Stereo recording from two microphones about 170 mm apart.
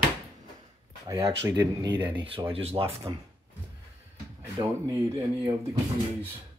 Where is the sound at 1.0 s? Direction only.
20° right (ahead or behind).